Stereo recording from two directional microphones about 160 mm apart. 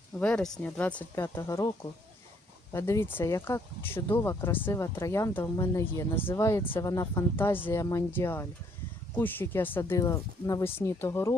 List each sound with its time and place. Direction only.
0.2 s speech: 5° left (ahead or behind)